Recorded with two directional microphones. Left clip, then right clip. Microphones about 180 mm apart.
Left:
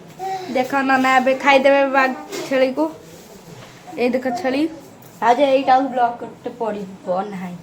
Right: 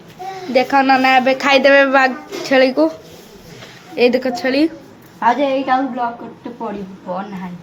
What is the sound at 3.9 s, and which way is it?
Speech, 15° right (ahead or behind).